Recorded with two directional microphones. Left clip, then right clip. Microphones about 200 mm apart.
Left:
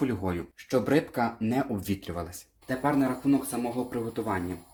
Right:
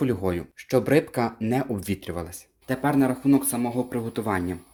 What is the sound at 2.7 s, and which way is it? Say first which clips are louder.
Speech: right 4 dB; 50° right (ahead or behind).